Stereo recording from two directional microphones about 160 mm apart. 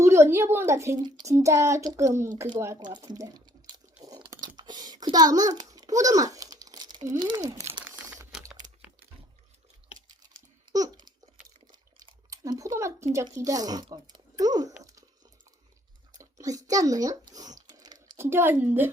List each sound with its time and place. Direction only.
0.0 s speech: 15° right (ahead or behind)
4.0 s a sound: 25° right (ahead or behind)
5.5 s crumpling: 25° right (ahead or behind)
7.3 s speech: 20° right (ahead or behind)
8.6 s typing: 50° right (ahead or behind)
10.7 s babbling: 25° right (ahead or behind)
11.7 s a sound: 25° right (ahead or behind)
13.2 s speech: 25° right (ahead or behind)
16.1 s speech: 20° right (ahead or behind)
17.7 s a sound: 25° right (ahead or behind)
18.3 s a woman's voice: 15° right (ahead or behind)